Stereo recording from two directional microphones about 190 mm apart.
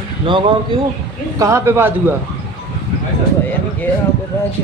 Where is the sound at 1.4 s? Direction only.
15° right (ahead or behind).